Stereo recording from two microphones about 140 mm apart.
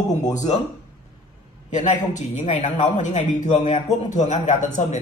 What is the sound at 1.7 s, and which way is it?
A man's voice, 60° left (ahead or behind).